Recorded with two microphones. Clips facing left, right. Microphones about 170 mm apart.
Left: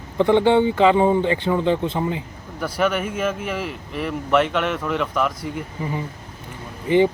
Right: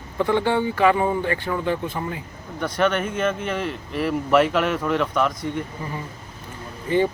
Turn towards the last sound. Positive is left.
turn(degrees=15)  # may be behind; listen again after turning